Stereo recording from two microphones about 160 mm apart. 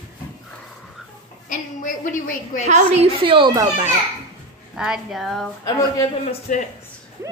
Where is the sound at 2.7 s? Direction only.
45° right (ahead or behind).